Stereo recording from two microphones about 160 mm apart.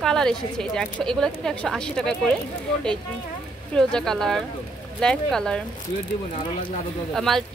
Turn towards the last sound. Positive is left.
turn(degrees=0)  # may be behind; listen again after turning